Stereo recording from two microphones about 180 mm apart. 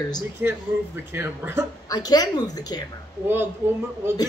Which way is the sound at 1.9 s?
20° left (ahead or behind).